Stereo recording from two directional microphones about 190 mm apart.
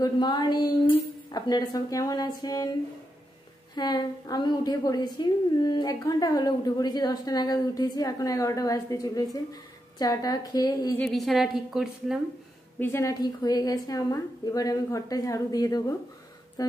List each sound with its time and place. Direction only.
0.0 s a woman's voice: 25° left (ahead or behind)
3.7 s a woman's voice: 20° left (ahead or behind)
11.0 s a woman's voice: centre (ahead or behind)
12.7 s a woman's voice: 10° left (ahead or behind)